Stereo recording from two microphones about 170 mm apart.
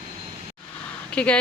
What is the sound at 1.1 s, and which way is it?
Speech, 5° left (ahead or behind).